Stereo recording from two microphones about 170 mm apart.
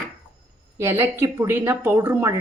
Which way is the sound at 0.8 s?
15° right (ahead or behind).